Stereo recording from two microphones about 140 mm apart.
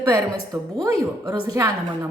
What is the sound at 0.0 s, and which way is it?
A woman's voice, 25° right (ahead or behind).